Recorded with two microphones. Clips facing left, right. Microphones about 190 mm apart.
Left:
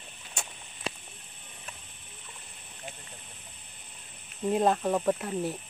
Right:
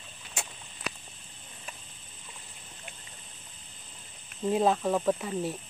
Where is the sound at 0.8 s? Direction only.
30° left (ahead or behind).